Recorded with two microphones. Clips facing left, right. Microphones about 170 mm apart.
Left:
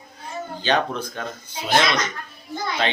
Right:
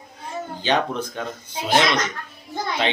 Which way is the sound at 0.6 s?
15° right (ahead or behind).